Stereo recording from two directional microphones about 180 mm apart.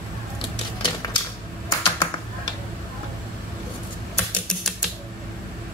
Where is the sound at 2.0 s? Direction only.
25° left (ahead or behind).